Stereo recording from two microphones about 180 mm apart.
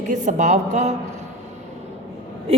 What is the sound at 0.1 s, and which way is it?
Speech, 40° right (ahead or behind).